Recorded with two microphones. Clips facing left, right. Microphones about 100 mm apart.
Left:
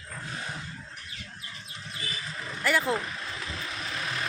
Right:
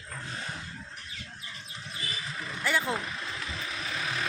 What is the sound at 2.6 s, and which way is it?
Speech, centre (ahead or behind).